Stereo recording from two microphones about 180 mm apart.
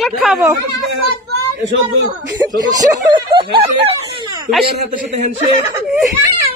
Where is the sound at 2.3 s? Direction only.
20° right (ahead or behind).